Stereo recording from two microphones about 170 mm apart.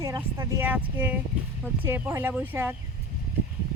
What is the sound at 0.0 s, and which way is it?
Speech, 15° right (ahead or behind).